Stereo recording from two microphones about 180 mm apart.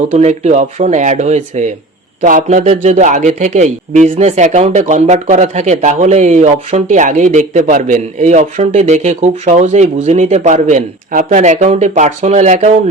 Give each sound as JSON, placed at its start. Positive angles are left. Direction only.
{"t": 0.1, "sound": "speech", "side_deg": -40}